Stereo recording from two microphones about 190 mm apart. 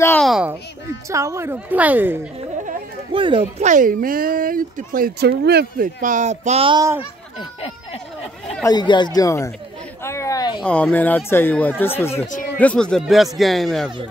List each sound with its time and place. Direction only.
0.2 s a sound: 5° right (ahead or behind)
1.0 s speech: 15° right (ahead or behind)
3.1 s speech: 25° right (ahead or behind)
8.6 s speech: 25° left (ahead or behind)
10.0 s a sound: 15° left (ahead or behind)
10.6 s speech: 5° left (ahead or behind)